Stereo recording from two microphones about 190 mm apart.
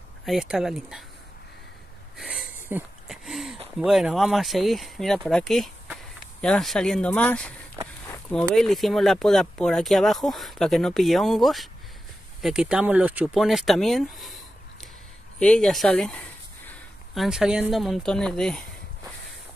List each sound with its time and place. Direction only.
0.2 s speech: centre (ahead or behind)
2.1 s wheeze: 5° right (ahead or behind)
3.7 s speech: centre (ahead or behind)